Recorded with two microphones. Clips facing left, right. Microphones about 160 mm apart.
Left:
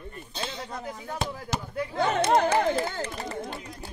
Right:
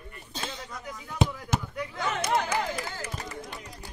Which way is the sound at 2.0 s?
50° left (ahead or behind).